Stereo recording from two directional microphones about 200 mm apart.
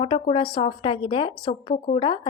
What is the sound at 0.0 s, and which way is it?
A woman's voice, 25° left (ahead or behind).